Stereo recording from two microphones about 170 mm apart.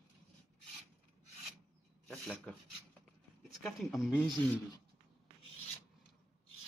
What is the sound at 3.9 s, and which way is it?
Speech, 15° left (ahead or behind).